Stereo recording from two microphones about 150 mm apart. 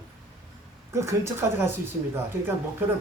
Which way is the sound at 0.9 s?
20° right (ahead or behind).